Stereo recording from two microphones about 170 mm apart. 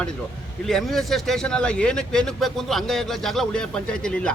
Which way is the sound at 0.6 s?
Centre (ahead or behind).